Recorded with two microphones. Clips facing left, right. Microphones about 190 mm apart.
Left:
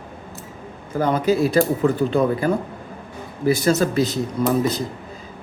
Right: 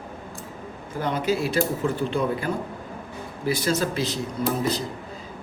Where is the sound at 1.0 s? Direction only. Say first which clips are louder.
Left 6 dB; 45° left (ahead or behind).